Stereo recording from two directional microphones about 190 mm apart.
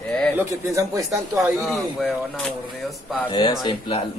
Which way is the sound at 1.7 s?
Centre (ahead or behind).